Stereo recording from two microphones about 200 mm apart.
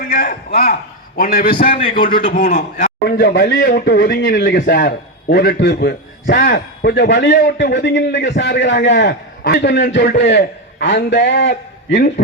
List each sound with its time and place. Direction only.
0.0 s a man's voice: 45° left (ahead or behind)
4.4 s a man's voice: 65° left (ahead or behind)